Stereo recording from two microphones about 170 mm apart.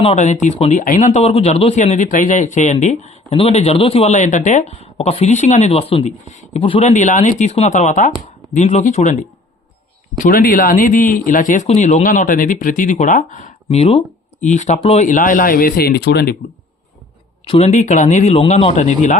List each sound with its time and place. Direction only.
0.0 s speech: 40° left (ahead or behind)
6.9 s speech: 45° left (ahead or behind)
10.2 s speech: 55° left (ahead or behind)
17.4 s speech: 35° left (ahead or behind)